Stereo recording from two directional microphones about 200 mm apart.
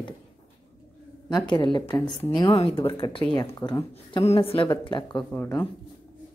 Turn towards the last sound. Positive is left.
turn(degrees=10)  # may be behind; listen again after turning